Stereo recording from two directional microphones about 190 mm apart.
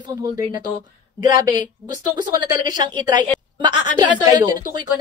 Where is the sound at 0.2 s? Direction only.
20° right (ahead or behind).